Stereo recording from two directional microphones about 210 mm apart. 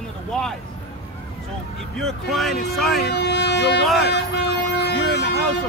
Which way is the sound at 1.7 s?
Centre (ahead or behind).